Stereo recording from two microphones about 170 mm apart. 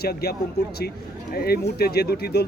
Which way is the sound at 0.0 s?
65° left (ahead or behind).